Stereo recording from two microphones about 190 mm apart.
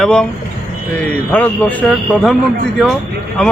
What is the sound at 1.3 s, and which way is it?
Speech, 10° left (ahead or behind).